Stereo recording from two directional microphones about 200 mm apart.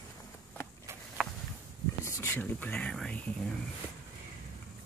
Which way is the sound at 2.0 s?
15° left (ahead or behind).